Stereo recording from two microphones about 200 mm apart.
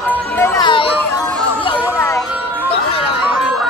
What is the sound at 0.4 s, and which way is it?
Music, 20° left (ahead or behind).